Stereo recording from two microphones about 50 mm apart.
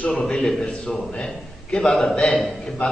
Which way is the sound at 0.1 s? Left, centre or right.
Centre.